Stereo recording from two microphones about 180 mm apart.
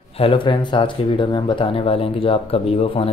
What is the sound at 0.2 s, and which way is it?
Speech, 30° left (ahead or behind).